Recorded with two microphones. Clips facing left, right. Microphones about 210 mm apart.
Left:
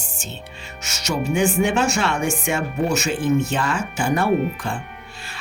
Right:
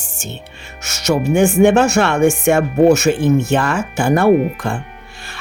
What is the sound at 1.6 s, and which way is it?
Speech, 65° right (ahead or behind).